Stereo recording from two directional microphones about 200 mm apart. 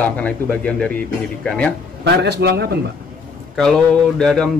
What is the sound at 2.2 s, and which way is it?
Speech, 55° right (ahead or behind).